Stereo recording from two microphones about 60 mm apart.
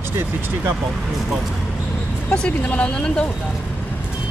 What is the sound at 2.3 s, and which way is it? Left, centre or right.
Speech, centre.